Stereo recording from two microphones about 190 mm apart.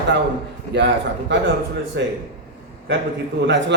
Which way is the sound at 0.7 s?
65° right (ahead or behind).